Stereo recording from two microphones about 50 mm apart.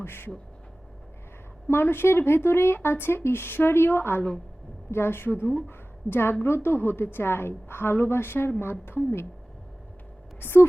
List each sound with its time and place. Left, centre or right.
0.0 s speech: left
1.6 s a woman's voice: left
10.4 s a woman's voice: left